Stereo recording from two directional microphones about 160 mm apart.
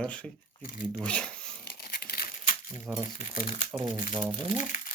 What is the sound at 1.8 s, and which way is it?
Crumpling, 70° left (ahead or behind).